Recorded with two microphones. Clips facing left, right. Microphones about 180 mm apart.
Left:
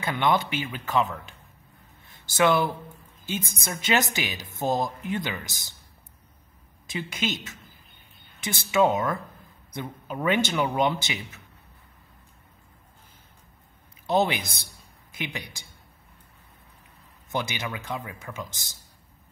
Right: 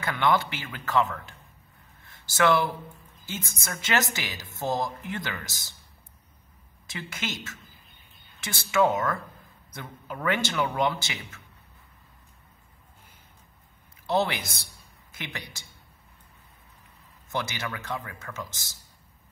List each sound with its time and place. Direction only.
0.0 s a woman's voice: 20° left (ahead or behind)
6.9 s a woman's voice: 15° left (ahead or behind)
14.0 s a woman's voice: 20° left (ahead or behind)
17.3 s a woman's voice: 20° left (ahead or behind)